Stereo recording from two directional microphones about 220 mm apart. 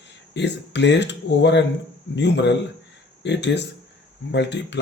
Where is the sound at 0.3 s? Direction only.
50° left (ahead or behind).